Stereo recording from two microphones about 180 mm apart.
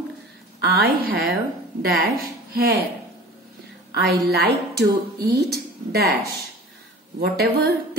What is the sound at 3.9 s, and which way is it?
A woman's voice, 65° right (ahead or behind).